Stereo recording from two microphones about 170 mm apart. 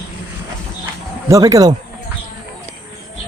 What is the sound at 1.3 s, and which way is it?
Speech, 20° right (ahead or behind).